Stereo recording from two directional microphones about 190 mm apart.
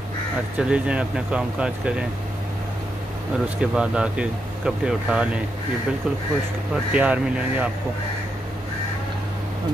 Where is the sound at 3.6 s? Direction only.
5° right (ahead or behind).